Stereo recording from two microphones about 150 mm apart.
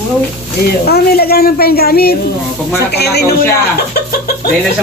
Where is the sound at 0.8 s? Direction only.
90° left.